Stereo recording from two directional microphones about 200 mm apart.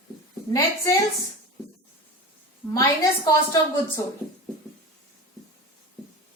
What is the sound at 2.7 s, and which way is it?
A woman's voice, 15° left (ahead or behind).